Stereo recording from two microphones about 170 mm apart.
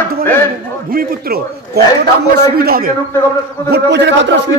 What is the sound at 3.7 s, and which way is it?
Speech, 90° right.